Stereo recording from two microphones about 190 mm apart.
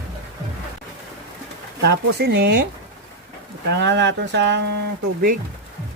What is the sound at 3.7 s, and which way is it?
Speech, 65° right (ahead or behind).